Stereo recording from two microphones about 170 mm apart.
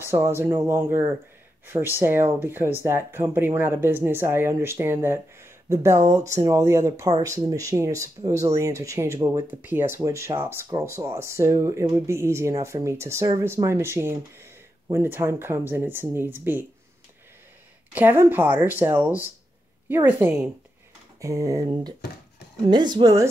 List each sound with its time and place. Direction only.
0.0 s speech: 15° right (ahead or behind)
17.9 s speech: 10° right (ahead or behind)